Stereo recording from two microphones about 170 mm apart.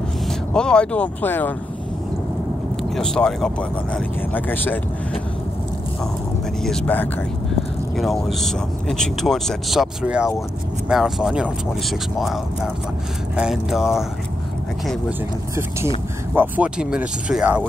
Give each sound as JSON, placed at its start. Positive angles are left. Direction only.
{"t": 0.5, "sound": "speech", "side_deg": 5}
{"t": 2.8, "sound": "speech", "side_deg": 5}
{"t": 6.6, "sound": "speech", "side_deg": 5}
{"t": 13.4, "sound": "speech", "side_deg": -5}
{"t": 15.0, "sound": "speech", "side_deg": -15}